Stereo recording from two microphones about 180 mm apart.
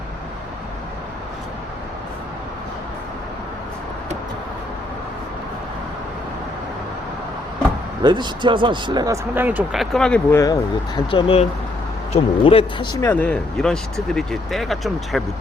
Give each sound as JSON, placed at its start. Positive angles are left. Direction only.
{"t": 8.0, "sound": "speech", "side_deg": -25}
{"t": 9.3, "sound": "speech", "side_deg": -10}
{"t": 10.3, "sound": "speech", "side_deg": 20}